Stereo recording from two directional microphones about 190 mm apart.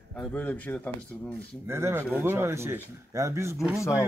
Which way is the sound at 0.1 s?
5° left (ahead or behind).